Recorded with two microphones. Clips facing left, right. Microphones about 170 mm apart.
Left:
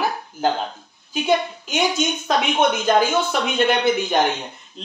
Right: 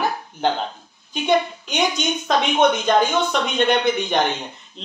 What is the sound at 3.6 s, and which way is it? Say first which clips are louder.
Speech: even; 5° left (ahead or behind).